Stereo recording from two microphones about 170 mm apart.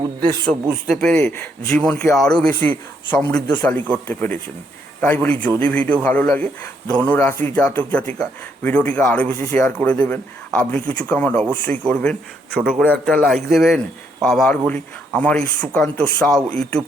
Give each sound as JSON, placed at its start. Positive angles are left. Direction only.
{"t": 0.0, "sound": "speech", "side_deg": -20}
{"t": 0.9, "sound": "a man's voice", "side_deg": 5}
{"t": 12.5, "sound": "a man's voice", "side_deg": -10}